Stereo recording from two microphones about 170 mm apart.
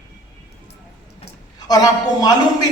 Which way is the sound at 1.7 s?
20° left (ahead or behind).